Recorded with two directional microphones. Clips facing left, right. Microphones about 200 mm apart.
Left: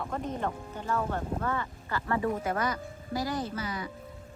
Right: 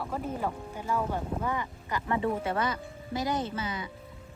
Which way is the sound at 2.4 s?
30° right (ahead or behind).